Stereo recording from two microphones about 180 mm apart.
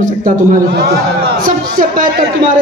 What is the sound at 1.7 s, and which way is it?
Speech, 50° right (ahead or behind).